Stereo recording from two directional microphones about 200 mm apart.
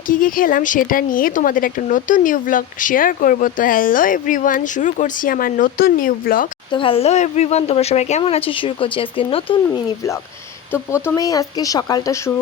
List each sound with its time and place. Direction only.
0.1 s a woman's voice: 45° left (ahead or behind)
6.7 s speech: 25° left (ahead or behind)